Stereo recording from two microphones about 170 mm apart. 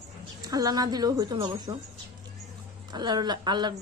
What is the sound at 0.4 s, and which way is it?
Speech, 20° right (ahead or behind).